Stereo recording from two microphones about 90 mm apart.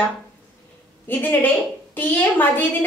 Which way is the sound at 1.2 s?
20° left (ahead or behind).